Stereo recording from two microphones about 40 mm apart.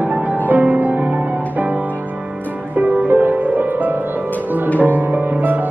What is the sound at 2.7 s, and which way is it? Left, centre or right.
Music, right.